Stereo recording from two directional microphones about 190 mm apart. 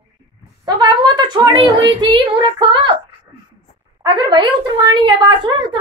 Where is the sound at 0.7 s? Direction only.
25° right (ahead or behind).